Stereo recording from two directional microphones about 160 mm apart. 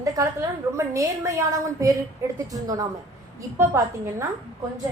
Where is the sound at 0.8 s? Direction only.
20° right (ahead or behind).